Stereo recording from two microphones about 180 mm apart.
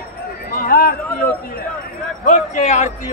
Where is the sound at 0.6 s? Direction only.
55° left (ahead or behind).